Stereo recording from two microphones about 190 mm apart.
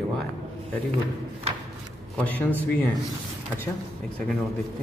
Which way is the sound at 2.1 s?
10° left (ahead or behind).